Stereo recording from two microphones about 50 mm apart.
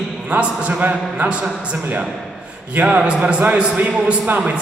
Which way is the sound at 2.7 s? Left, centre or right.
Right.